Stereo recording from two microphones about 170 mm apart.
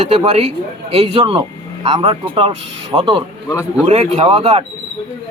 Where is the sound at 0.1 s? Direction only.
35° right (ahead or behind).